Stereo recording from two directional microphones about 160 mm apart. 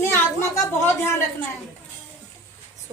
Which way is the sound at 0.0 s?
15° left (ahead or behind).